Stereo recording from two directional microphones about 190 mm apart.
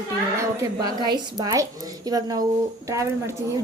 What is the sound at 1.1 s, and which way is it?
A woman's voice, 20° right (ahead or behind).